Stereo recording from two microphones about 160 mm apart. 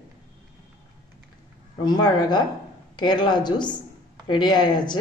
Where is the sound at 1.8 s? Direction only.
25° left (ahead or behind).